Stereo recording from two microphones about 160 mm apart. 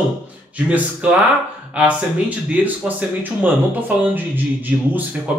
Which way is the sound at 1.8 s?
10° right (ahead or behind).